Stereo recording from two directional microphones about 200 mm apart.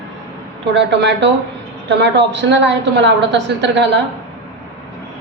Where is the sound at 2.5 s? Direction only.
60° right (ahead or behind).